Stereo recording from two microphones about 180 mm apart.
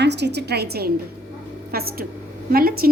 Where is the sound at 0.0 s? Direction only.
70° right (ahead or behind).